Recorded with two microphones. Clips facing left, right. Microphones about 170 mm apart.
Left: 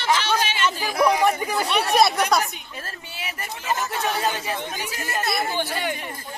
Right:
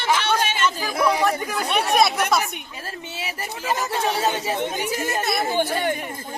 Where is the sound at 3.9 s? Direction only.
25° right (ahead or behind).